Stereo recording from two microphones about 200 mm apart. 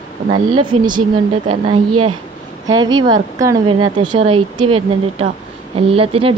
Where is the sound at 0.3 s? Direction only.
25° right (ahead or behind).